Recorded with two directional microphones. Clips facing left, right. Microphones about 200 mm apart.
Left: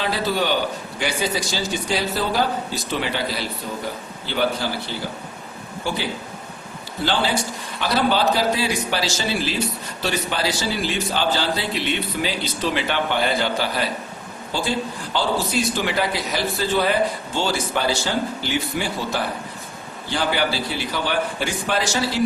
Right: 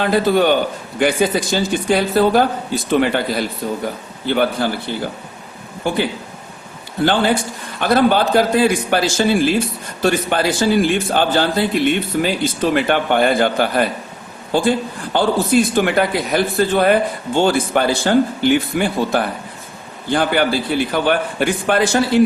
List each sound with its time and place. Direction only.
0.0 s a man's voice: 55° right (ahead or behind)
5.8 s a man's voice: 55° right (ahead or behind)
7.0 s a man's voice: 55° right (ahead or behind)